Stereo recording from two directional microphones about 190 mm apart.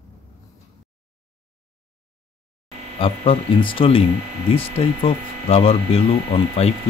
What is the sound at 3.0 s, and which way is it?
Speech, 30° left (ahead or behind).